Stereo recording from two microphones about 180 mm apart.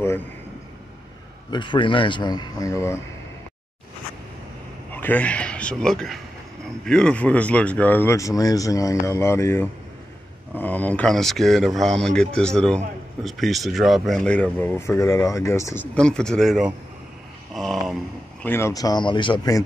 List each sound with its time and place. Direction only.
1.5 s a man's voice: 25° left (ahead or behind)
4.9 s speech: 10° left (ahead or behind)
18.4 s a man's voice: 15° left (ahead or behind)